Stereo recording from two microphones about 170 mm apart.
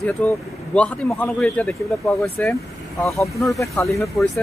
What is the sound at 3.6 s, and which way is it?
Speech, 15° left (ahead or behind).